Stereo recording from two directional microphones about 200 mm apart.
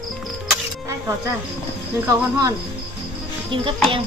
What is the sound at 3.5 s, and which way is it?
Speech, 25° right (ahead or behind).